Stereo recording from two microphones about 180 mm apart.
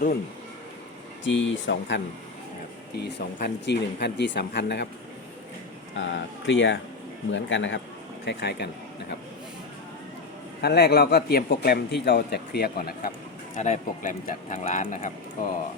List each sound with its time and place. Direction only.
1.2 s speech: 90° left
2.9 s speech: 70° left (ahead or behind)
6.0 s speech: 90° left
8.2 s speech: 75° left (ahead or behind)
10.6 s a man's voice: 60° left (ahead or behind)
13.6 s speech: 45° left (ahead or behind)